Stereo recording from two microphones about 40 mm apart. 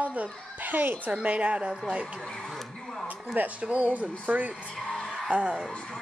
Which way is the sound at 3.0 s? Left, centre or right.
Right.